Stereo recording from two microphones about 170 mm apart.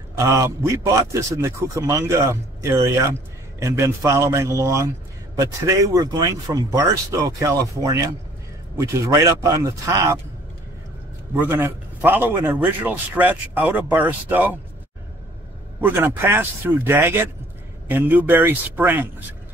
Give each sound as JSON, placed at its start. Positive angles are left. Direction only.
{"t": 0.2, "sound": "a man's voice", "side_deg": -20}
{"t": 11.3, "sound": "a man's voice", "side_deg": -10}
{"t": 15.8, "sound": "a man's voice", "side_deg": -15}